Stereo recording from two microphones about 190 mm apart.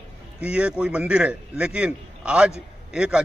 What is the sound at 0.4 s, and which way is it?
A man's voice, 5° right (ahead or behind).